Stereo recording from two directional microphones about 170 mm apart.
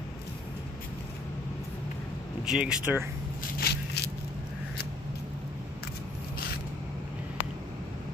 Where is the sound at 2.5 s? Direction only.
5° right (ahead or behind).